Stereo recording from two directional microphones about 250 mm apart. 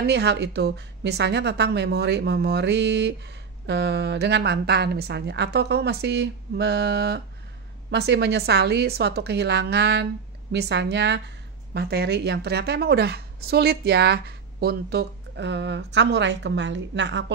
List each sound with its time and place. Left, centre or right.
0.0 s a woman's voice: right